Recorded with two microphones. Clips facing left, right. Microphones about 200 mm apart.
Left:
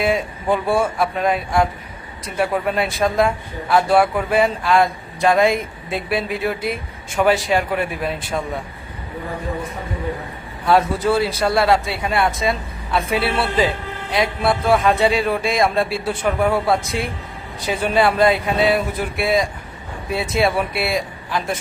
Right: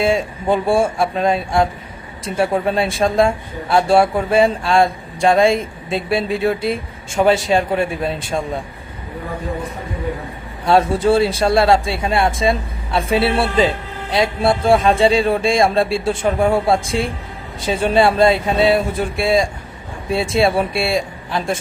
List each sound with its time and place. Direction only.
0.0 s speech: 25° right (ahead or behind)
10.7 s speech: 25° right (ahead or behind)